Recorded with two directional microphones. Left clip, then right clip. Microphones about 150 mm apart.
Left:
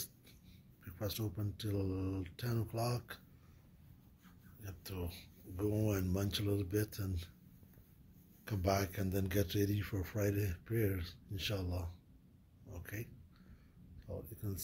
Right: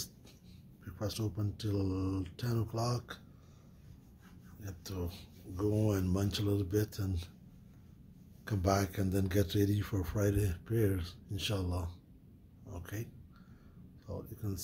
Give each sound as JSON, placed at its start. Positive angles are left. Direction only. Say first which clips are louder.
{"t": 0.8, "sound": "speech", "louder": "right 3 dB", "side_deg": -5}
{"t": 4.6, "sound": "speech", "louder": "right 4 dB", "side_deg": -10}
{"t": 8.5, "sound": "speech", "louder": "right 3 dB", "side_deg": -15}